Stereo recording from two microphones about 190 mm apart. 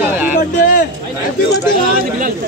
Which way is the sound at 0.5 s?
50° left (ahead or behind).